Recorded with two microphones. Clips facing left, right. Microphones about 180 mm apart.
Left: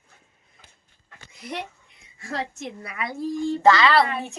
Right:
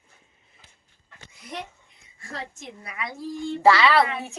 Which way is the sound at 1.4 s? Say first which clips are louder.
Left 3 dB; 70° left (ahead or behind).